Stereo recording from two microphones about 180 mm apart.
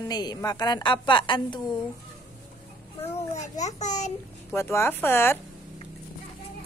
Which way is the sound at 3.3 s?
40° left (ahead or behind).